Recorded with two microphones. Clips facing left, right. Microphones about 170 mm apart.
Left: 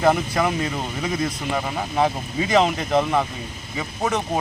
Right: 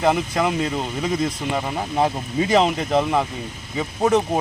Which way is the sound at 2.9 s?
5° right (ahead or behind).